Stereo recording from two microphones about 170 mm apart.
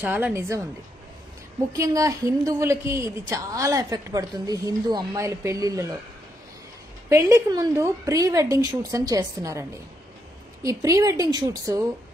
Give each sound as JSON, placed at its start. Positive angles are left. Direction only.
{"t": 0.0, "sound": "a woman's voice", "side_deg": -10}
{"t": 1.7, "sound": "a woman's voice", "side_deg": -20}
{"t": 7.1, "sound": "a woman's voice", "side_deg": -15}